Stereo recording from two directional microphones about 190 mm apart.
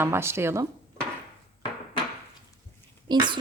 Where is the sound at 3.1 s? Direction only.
25° right (ahead or behind).